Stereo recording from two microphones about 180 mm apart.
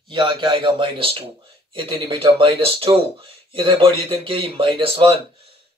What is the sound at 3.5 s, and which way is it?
A man's voice, 30° right (ahead or behind).